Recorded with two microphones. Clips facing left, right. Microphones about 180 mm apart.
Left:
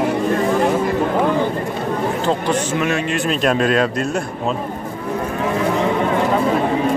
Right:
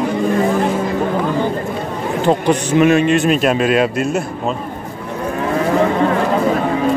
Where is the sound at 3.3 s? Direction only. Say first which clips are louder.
Right 3 dB; 5° right (ahead or behind).